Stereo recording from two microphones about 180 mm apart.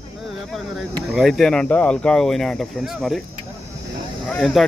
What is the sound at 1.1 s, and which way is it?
Speech, centre (ahead or behind).